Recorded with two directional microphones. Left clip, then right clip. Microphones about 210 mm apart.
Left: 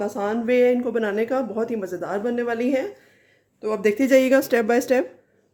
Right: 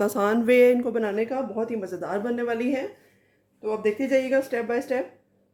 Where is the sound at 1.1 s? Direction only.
25° left (ahead or behind).